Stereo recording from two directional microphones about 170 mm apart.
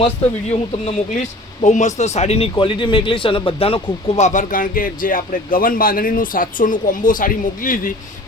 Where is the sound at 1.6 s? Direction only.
45° left (ahead or behind).